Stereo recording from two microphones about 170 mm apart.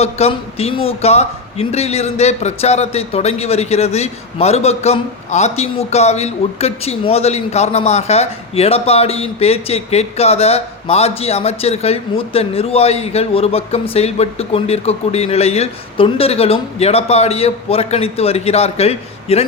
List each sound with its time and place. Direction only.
0.0 s a man's voice: 35° left (ahead or behind)